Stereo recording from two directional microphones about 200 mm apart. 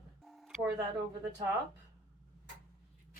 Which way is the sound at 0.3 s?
Centre (ahead or behind).